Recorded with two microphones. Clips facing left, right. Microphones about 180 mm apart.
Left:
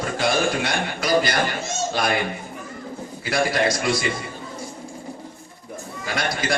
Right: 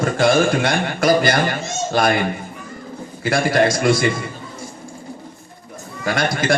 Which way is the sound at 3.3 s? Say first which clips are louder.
Right 5 dB; 50° right (ahead or behind).